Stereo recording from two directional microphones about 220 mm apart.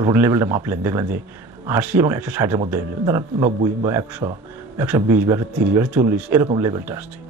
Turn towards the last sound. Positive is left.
turn(degrees=-10)  # may be behind; listen again after turning